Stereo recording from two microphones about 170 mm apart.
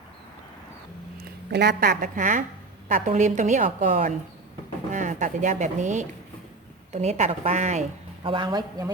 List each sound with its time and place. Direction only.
1.2 s a woman's voice: 70° right (ahead or behind); by 8.9 s 25° right (ahead or behind)